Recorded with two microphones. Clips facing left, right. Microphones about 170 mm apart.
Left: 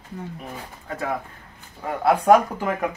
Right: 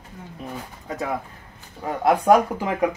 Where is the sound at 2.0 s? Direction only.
15° right (ahead or behind).